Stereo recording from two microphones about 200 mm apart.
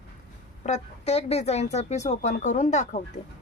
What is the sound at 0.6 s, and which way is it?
Speech, 35° left (ahead or behind).